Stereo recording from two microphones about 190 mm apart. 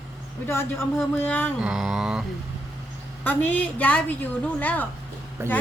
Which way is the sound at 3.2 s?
10° left (ahead or behind).